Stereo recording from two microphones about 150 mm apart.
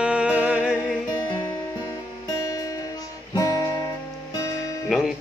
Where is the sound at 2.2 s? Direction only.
25° left (ahead or behind).